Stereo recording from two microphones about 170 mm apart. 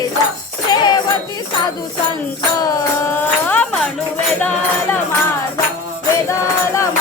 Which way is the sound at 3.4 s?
10° left (ahead or behind).